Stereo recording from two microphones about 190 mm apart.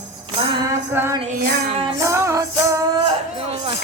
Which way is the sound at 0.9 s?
15° right (ahead or behind).